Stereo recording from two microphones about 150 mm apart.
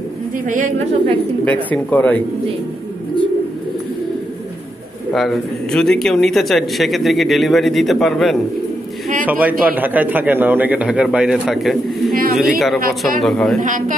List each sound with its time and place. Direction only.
0.5 s a man's voice: 60° right (ahead or behind)
1.4 s speech: 10° left (ahead or behind)
5.1 s a man's voice: centre (ahead or behind)
9.2 s a man's voice: 10° right (ahead or behind)
12.1 s a sound: 70° right (ahead or behind)
12.4 s a man's voice: centre (ahead or behind)
13.6 s a man's voice: 60° right (ahead or behind)